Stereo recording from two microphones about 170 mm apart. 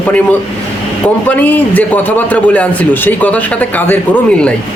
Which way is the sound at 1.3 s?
10° left (ahead or behind).